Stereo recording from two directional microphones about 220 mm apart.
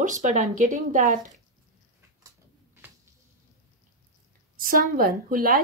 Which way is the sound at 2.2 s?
10° right (ahead or behind).